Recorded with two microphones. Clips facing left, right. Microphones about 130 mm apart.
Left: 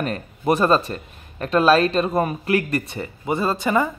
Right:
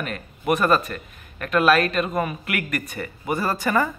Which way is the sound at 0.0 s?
35° left (ahead or behind).